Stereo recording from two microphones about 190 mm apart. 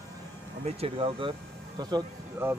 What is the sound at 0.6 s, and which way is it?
Speech, 30° right (ahead or behind).